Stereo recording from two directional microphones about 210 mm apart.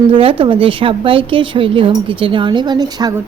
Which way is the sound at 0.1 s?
25° right (ahead or behind).